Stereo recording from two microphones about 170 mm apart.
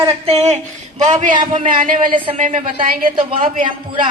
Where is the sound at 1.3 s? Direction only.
30° right (ahead or behind).